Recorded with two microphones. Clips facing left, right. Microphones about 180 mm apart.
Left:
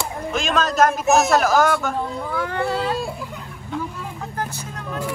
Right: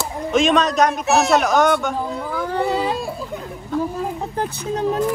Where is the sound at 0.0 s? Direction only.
Centre (ahead or behind); by 3.0 s 15° right (ahead or behind).